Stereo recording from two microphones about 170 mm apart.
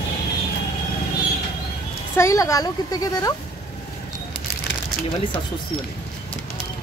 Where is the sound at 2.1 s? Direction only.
15° left (ahead or behind).